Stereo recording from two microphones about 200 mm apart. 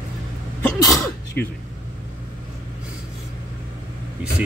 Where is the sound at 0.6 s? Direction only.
15° left (ahead or behind).